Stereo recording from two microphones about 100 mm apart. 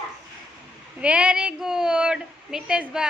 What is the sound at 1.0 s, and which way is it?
Speech, 10° right (ahead or behind).